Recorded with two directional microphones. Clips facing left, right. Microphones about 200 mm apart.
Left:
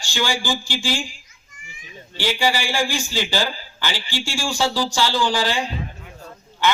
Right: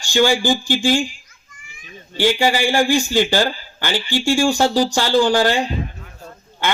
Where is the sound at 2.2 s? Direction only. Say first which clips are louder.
Right 5 dB; 50° right (ahead or behind).